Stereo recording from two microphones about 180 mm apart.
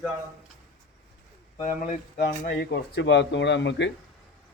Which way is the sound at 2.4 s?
60° left (ahead or behind).